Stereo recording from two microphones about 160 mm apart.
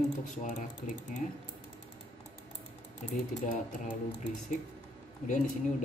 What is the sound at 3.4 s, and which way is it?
Speech, 55° left (ahead or behind).